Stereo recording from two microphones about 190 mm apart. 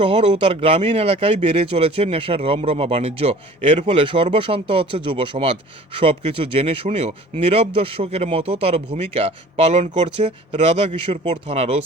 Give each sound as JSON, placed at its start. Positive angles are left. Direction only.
{"t": 0.0, "sound": "speech", "side_deg": -30}